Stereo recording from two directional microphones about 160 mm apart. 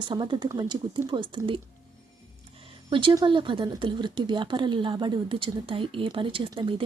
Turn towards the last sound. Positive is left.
turn(degrees=-30)  # may be behind; listen again after turning